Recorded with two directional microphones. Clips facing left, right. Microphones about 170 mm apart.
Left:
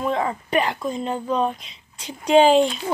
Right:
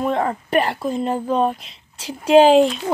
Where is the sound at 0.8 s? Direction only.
5° right (ahead or behind).